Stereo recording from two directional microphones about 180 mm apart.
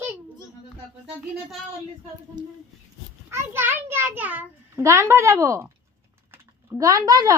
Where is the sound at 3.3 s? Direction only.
15° right (ahead or behind).